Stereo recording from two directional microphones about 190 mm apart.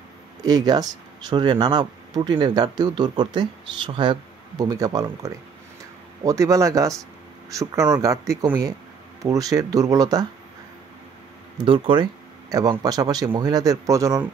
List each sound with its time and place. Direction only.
0.4 s speech: 20° right (ahead or behind)
11.6 s speech: 30° right (ahead or behind)